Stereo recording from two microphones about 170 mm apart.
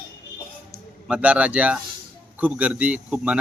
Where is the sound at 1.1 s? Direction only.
5° right (ahead or behind).